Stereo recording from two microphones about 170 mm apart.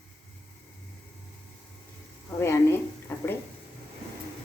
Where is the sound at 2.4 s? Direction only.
15° left (ahead or behind).